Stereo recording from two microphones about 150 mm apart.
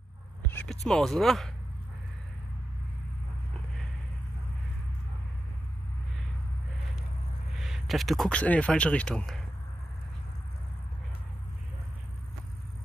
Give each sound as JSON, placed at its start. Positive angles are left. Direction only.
{"t": 0.5, "sound": "speech", "side_deg": 5}
{"t": 7.5, "sound": "speech", "side_deg": 0}